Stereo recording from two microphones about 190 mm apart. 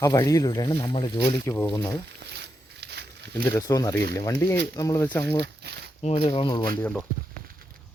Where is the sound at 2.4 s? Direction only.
60° right (ahead or behind).